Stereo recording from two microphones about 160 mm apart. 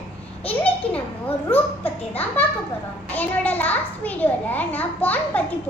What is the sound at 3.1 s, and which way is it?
A child's voice, 10° left (ahead or behind).